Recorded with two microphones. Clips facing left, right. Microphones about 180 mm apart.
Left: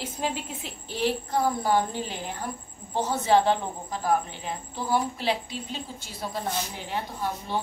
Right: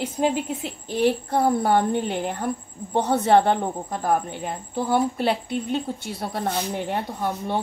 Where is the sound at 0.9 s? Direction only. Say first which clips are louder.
Right 5 dB; 55° right (ahead or behind).